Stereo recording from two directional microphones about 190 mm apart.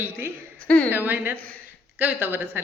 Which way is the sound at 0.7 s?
10° left (ahead or behind).